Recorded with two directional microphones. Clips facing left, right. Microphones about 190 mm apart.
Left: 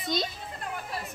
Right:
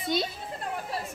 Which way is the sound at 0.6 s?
30° right (ahead or behind).